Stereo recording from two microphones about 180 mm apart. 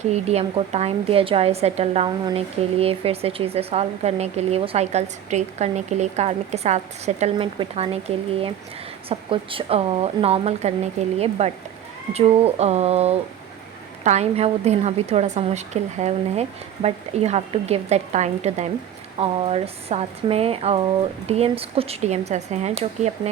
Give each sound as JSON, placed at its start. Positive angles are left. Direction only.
{"t": 0.1, "sound": "speech", "side_deg": -35}